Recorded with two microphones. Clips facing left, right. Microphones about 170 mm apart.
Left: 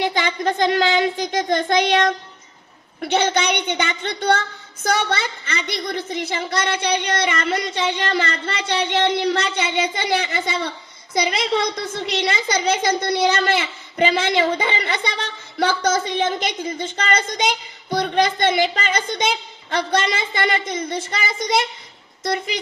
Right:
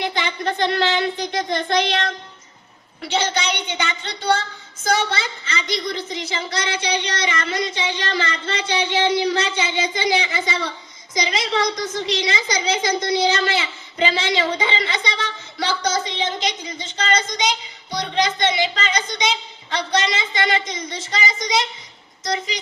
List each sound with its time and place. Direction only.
0.0 s a child's voice: 45° left (ahead or behind)